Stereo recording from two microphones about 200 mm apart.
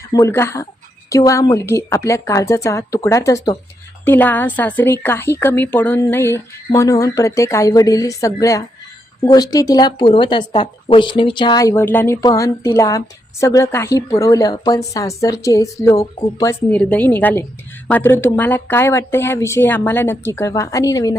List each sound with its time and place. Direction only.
0.1 s a woman's voice: 15° left (ahead or behind)